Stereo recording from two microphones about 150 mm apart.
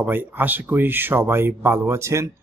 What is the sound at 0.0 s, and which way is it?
A man's voice, 10° right (ahead or behind).